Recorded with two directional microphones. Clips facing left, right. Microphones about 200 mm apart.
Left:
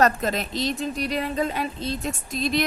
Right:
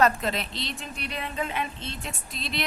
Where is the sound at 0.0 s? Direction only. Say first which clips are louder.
Left 2 dB; 45° left (ahead or behind).